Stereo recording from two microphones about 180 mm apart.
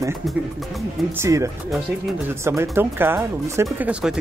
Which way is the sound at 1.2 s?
15° right (ahead or behind).